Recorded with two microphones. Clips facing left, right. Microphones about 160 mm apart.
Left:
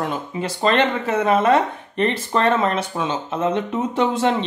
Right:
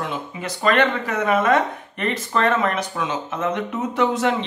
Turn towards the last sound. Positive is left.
turn(degrees=30)  # may be behind; listen again after turning